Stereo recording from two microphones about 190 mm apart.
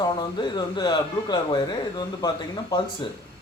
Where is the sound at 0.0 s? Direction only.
20° left (ahead or behind).